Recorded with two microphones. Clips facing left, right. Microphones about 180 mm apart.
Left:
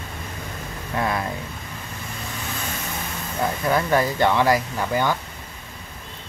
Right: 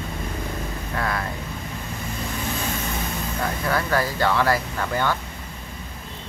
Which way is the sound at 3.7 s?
20° left (ahead or behind).